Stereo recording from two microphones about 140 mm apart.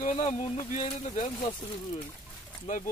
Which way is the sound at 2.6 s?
65° left (ahead or behind).